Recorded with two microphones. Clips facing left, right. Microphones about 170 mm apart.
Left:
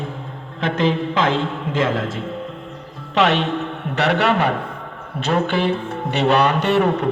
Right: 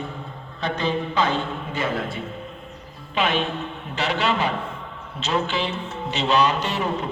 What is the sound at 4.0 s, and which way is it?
A man's voice, 65° left (ahead or behind).